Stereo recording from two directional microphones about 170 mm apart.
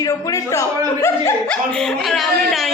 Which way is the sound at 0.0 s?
20° left (ahead or behind).